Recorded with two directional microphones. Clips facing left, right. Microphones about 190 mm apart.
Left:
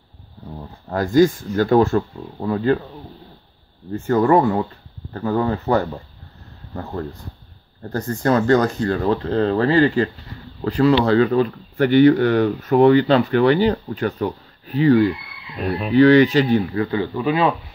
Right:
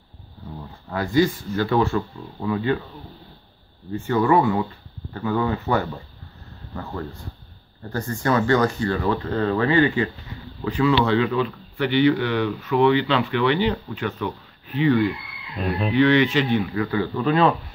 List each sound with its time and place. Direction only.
0.8 s speech: 45° left (ahead or behind)
3.9 s speech: 45° left (ahead or behind)
17.0 s speech: 10° left (ahead or behind)